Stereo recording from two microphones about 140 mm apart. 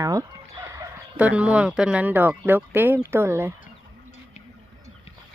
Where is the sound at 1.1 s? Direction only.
10° right (ahead or behind).